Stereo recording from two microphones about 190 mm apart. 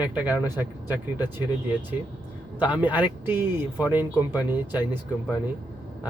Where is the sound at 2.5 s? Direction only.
10° right (ahead or behind).